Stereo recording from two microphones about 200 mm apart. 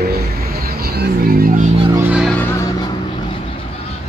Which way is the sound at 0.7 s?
50° right (ahead or behind).